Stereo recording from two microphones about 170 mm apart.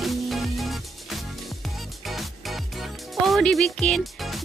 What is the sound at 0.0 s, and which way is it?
Music, centre (ahead or behind).